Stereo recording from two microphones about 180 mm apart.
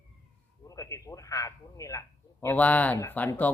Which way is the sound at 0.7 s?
20° left (ahead or behind).